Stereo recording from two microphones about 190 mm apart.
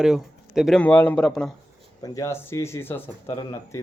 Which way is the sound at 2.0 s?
15° left (ahead or behind).